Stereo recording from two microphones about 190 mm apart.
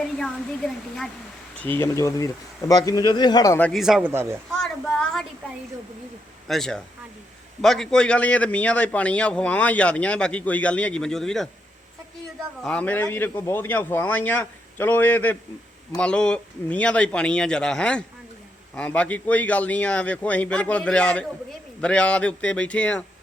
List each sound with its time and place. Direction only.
0.2 s a man's voice: 5° left (ahead or behind)
3.7 s speech: centre (ahead or behind)
4.6 s a sound: centre (ahead or behind)
6.5 s a man's voice: centre (ahead or behind)
12.6 s a man's voice: 5° left (ahead or behind)